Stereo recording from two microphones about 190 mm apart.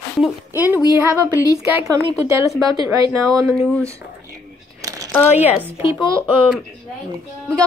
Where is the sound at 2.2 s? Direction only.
15° right (ahead or behind).